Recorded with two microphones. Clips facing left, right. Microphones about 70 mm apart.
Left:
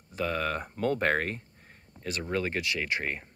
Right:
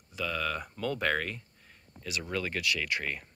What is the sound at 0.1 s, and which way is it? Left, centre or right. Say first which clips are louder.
Speech: left 3 dB; left.